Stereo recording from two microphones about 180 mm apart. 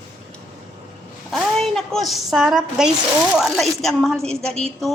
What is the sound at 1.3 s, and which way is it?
A woman's voice, 5° left (ahead or behind).